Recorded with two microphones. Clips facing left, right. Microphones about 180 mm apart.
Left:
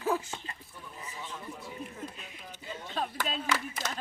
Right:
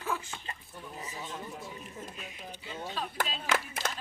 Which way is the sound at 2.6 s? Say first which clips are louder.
Left 2 dB; 50° left (ahead or behind).